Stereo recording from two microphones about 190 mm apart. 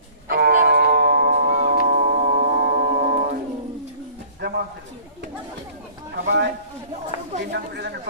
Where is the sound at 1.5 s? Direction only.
45° right (ahead or behind).